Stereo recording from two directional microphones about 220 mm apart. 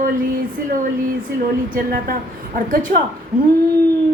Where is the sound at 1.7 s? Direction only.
40° right (ahead or behind).